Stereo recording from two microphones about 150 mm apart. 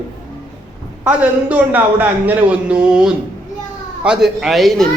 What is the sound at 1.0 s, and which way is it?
A man's voice, 10° right (ahead or behind).